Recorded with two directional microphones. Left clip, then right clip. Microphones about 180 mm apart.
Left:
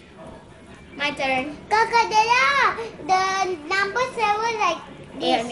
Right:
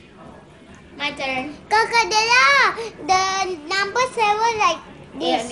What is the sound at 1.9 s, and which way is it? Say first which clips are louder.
A child's voice: right 1 dB; 40° right (ahead or behind).